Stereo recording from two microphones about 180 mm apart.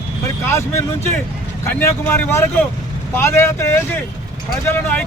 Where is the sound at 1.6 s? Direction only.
10° left (ahead or behind).